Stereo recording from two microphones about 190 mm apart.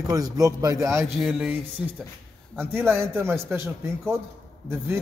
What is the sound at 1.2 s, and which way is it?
A man's voice, 5° right (ahead or behind).